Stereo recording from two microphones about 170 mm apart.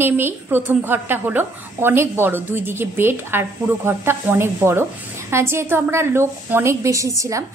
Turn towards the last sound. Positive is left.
turn(degrees=-20)  # may be behind; listen again after turning